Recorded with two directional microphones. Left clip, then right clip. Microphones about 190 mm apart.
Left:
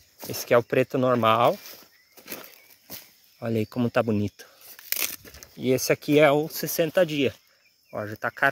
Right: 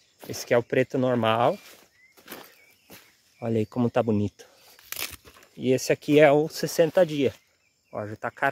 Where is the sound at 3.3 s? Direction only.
10° right (ahead or behind).